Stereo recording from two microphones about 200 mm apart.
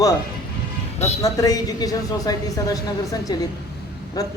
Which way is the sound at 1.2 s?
15° left (ahead or behind).